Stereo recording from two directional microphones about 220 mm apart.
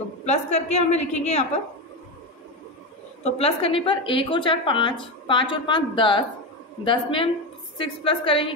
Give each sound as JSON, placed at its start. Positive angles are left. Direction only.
{"t": 0.2, "sound": "a woman's voice", "side_deg": 30}
{"t": 3.3, "sound": "a woman's voice", "side_deg": 25}